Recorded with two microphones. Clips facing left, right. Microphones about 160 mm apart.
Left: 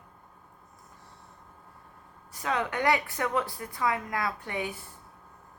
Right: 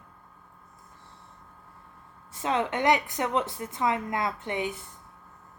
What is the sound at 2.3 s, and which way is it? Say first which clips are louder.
A woman's voice: right 3 dB; 25° right (ahead or behind).